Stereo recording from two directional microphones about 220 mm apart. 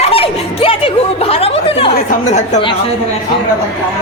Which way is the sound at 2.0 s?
35° left (ahead or behind).